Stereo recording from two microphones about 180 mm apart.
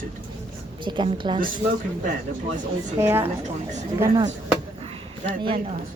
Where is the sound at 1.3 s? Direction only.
50° right (ahead or behind).